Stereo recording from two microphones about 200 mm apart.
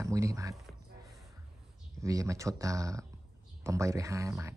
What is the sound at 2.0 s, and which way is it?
Speech, 15° right (ahead or behind).